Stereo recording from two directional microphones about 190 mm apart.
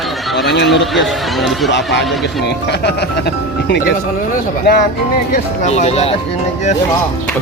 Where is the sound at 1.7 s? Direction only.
65° left (ahead or behind).